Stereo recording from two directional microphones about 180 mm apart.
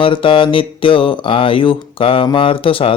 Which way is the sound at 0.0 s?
30° left (ahead or behind).